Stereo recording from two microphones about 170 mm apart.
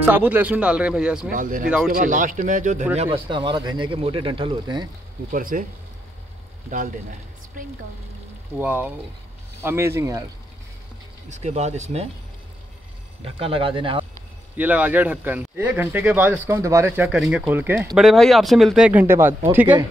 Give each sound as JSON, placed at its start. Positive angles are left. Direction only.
{"t": 0.0, "sound": "speech", "side_deg": -10}
{"t": 1.3, "sound": "a man's voice", "side_deg": -50}
{"t": 3.0, "sound": "speech", "side_deg": -30}
{"t": 5.3, "sound": "speech", "side_deg": -55}
{"t": 8.5, "sound": "speech", "side_deg": -10}
{"t": 11.2, "sound": "speech", "side_deg": -40}
{"t": 13.2, "sound": "speech", "side_deg": -35}
{"t": 14.6, "sound": "speech", "side_deg": -10}
{"t": 17.9, "sound": "speech", "side_deg": 0}